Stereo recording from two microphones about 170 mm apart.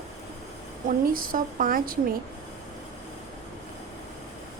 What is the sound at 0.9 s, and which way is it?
A woman's voice, 55° right (ahead or behind).